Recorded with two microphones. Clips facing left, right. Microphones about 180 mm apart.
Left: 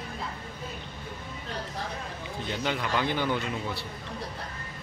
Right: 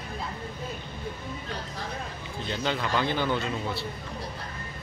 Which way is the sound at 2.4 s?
15° left (ahead or behind).